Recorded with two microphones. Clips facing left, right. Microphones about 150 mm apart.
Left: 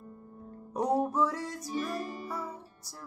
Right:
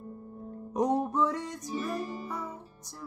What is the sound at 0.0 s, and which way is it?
Music, 30° right (ahead or behind).